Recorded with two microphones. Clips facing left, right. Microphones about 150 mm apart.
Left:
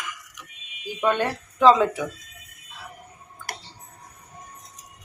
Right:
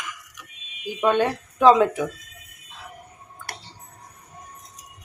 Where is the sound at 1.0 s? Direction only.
15° right (ahead or behind).